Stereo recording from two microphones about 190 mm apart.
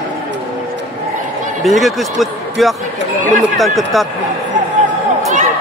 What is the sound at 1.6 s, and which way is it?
A man's voice, centre (ahead or behind).